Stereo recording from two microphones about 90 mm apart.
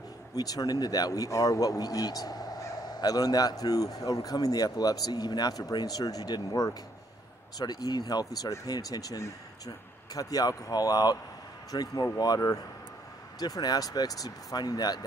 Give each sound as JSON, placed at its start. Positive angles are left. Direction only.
{"t": 0.3, "sound": "a man's voice", "side_deg": 45}